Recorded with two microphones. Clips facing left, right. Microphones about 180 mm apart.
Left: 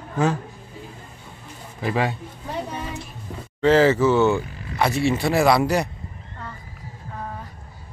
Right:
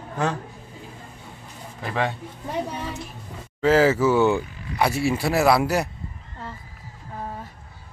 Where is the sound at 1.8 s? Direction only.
5° left (ahead or behind).